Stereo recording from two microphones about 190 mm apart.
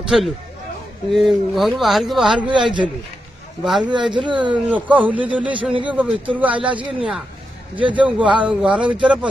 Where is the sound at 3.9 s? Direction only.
25° right (ahead or behind).